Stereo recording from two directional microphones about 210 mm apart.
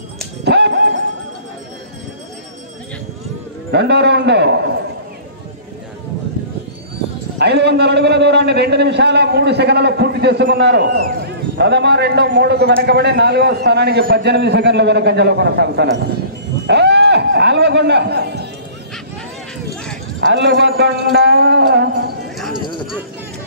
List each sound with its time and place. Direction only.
0.5 s ding: 55° right (ahead or behind)
3.7 s a man's voice: 55° right (ahead or behind)
7.3 s a man's voice: 55° right (ahead or behind)
16.6 s a sound: 55° right (ahead or behind)
20.2 s a man's voice: 55° right (ahead or behind)